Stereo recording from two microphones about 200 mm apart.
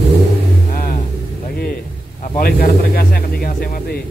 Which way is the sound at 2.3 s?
50° left (ahead or behind).